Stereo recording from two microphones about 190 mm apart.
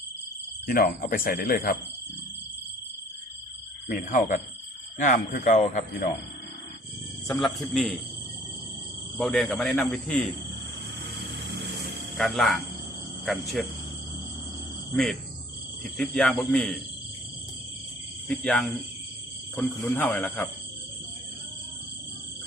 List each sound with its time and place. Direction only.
0.7 s speech: 50° left (ahead or behind)
3.8 s speech: 40° left (ahead or behind)
7.3 s speech: centre (ahead or behind)
9.1 s speech: 5° left (ahead or behind)
12.1 s speech: centre (ahead or behind)
15.8 s speech: 5° left (ahead or behind)
18.3 s speech: 5° left (ahead or behind)